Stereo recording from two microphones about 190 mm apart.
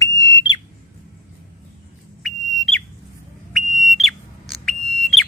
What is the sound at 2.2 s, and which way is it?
Whistle, centre (ahead or behind).